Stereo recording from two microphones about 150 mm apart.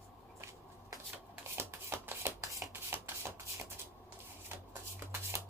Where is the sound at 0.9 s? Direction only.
20° right (ahead or behind).